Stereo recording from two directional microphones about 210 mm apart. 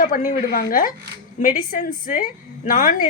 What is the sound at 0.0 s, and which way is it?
A woman's voice, 40° left (ahead or behind).